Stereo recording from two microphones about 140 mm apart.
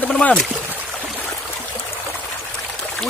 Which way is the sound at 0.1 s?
5° left (ahead or behind).